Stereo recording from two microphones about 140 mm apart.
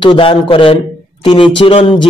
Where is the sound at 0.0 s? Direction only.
35° left (ahead or behind).